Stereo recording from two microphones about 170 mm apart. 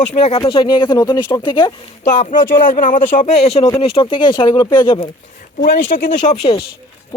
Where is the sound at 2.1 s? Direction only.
45° left (ahead or behind); by 5.1 s 25° left (ahead or behind).